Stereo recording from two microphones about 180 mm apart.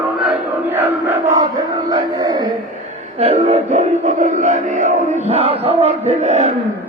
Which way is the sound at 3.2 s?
35° right (ahead or behind).